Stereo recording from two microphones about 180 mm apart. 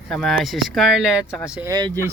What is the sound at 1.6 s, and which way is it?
Speech, 20° right (ahead or behind).